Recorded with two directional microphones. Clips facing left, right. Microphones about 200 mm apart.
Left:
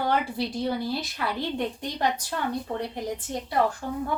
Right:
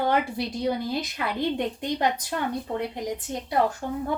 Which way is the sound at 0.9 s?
20° right (ahead or behind).